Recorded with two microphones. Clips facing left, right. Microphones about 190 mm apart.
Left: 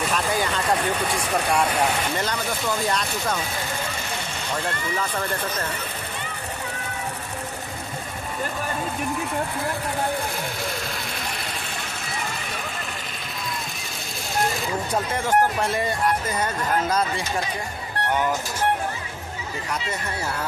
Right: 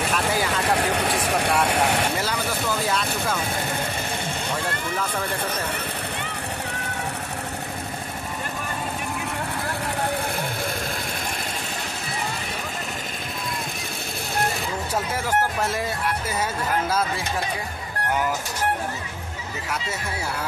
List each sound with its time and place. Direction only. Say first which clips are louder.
0.1 s vehicle: even; 5° right (ahead or behind)
2.1 s speech: even; 5° right (ahead or behind)
15.1 s speech: left 4 dB; 5° right (ahead or behind)